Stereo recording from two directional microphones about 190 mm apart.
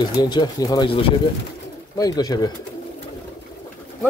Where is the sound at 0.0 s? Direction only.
20° left (ahead or behind).